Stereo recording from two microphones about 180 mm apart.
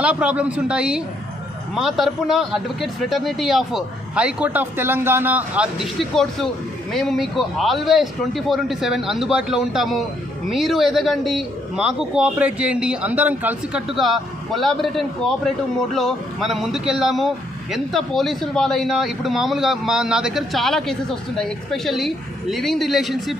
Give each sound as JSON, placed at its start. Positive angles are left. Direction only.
{"t": 0.0, "sound": "a man's voice", "side_deg": -5}
{"t": 6.1, "sound": "a man's voice", "side_deg": 0}